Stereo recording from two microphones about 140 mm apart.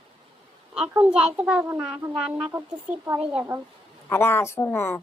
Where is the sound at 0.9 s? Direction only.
10° right (ahead or behind).